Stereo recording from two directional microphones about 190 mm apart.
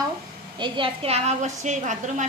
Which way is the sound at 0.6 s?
30° right (ahead or behind).